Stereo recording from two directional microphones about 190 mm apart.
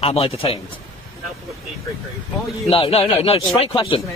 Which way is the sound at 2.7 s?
30° left (ahead or behind).